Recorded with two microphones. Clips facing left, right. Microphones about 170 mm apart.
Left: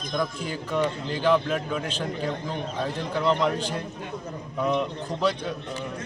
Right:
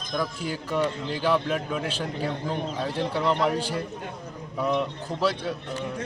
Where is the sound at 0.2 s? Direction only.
5° right (ahead or behind).